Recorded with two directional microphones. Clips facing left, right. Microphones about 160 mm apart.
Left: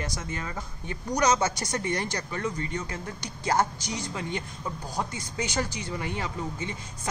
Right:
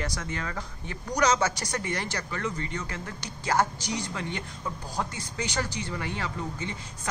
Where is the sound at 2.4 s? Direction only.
10° left (ahead or behind).